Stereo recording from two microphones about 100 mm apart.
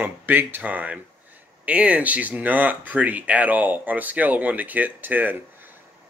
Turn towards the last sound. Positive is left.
turn(degrees=-20)  # may be behind; listen again after turning